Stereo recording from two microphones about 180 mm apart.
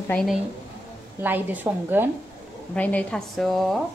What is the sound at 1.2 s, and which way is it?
Speech, 10° right (ahead or behind).